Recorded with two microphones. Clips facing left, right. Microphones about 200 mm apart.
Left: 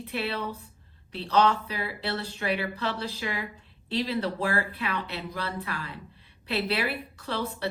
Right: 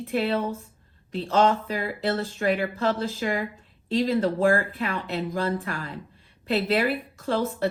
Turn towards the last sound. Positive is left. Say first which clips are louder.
# right 6 dB
turn(degrees=-45)  # may be behind; listen again after turning